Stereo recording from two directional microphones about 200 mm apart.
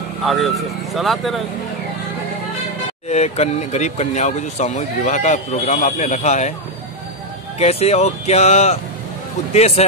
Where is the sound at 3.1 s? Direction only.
35° left (ahead or behind).